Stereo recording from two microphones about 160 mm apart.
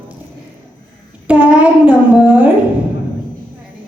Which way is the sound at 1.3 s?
10° right (ahead or behind).